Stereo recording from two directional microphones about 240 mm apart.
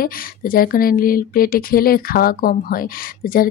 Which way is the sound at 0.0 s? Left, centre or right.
Left.